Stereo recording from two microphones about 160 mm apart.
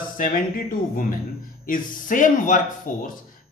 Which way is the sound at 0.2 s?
60° left (ahead or behind).